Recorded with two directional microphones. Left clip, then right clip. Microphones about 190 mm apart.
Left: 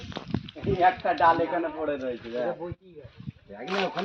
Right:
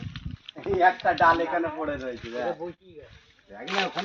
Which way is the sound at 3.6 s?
25° left (ahead or behind).